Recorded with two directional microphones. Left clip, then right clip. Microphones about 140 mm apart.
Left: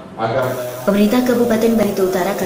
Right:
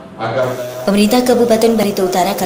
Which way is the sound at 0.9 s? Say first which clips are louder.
Right 3 dB; 15° right (ahead or behind).